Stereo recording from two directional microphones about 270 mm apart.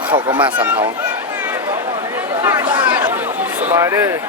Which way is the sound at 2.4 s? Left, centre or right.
Centre.